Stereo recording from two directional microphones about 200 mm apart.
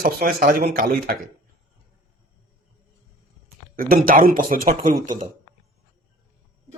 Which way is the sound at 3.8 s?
45° right (ahead or behind).